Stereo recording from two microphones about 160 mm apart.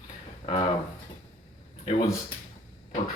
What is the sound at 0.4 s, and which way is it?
Speech, 40° left (ahead or behind).